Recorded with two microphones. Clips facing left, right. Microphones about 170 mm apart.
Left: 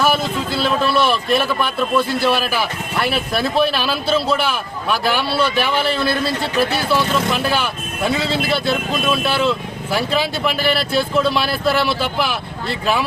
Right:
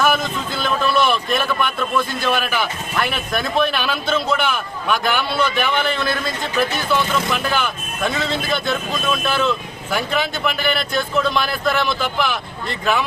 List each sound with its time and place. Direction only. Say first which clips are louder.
0.0 s speech: left 1 dB; 30° left (ahead or behind)
12.1 s speech: left 1 dB; 5° left (ahead or behind)
12.8 s speech: even; 35° left (ahead or behind)